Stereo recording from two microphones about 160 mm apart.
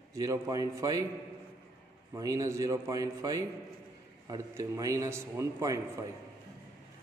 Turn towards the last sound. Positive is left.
turn(degrees=-20)  # may be behind; listen again after turning